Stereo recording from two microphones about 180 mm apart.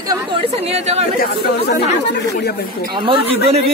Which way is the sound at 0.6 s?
35° right (ahead or behind).